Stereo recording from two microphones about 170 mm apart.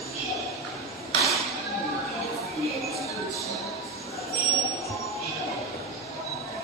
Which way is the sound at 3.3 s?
20° left (ahead or behind).